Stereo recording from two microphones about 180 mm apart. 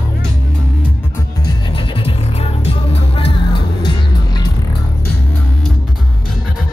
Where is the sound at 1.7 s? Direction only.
30° left (ahead or behind).